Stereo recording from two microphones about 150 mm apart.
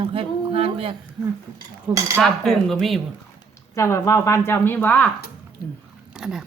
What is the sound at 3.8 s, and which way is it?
Speech, 20° left (ahead or behind).